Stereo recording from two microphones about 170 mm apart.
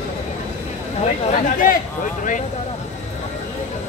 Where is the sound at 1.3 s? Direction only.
55° left (ahead or behind).